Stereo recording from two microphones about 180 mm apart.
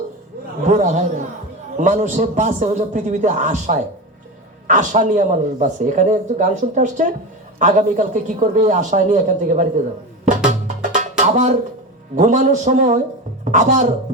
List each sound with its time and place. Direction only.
0.7 s a man's voice: 40° right (ahead or behind)
10.8 s music: 45° right (ahead or behind)
11.2 s a woman's voice: 45° right (ahead or behind)